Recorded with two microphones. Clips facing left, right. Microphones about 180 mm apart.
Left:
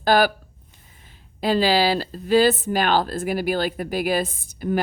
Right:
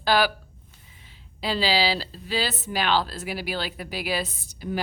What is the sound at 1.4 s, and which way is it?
A woman's voice, 50° left (ahead or behind).